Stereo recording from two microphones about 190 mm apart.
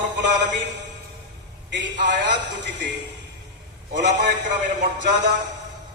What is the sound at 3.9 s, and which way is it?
Speech, 65° right (ahead or behind).